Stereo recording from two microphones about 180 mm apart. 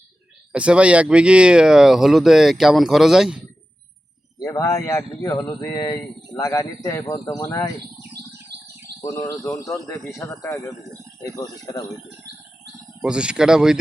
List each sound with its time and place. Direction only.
0.5 s speech: 5° right (ahead or behind)
4.4 s speech: 15° left (ahead or behind)
9.2 s speech: 15° left (ahead or behind)
13.0 s speech: 5° right (ahead or behind)